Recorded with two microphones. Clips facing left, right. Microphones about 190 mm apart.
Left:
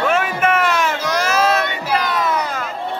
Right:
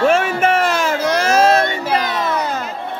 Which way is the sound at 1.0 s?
50° right (ahead or behind).